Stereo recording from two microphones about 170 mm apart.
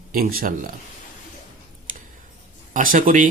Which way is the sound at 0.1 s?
55° right (ahead or behind).